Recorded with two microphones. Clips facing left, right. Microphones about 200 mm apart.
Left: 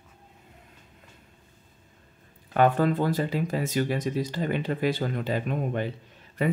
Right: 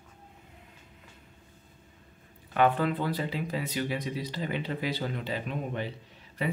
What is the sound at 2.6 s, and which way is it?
Speech, 45° left (ahead or behind).